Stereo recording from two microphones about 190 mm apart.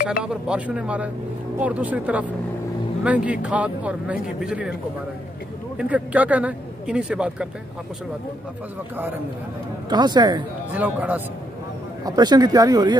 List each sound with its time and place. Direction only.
0.2 s speech: 5° right (ahead or behind)
5.8 s speech: 5° right (ahead or behind)
9.8 s speech: 20° right (ahead or behind)
10.7 s speech: 10° right (ahead or behind)
12.0 s speech: 20° right (ahead or behind)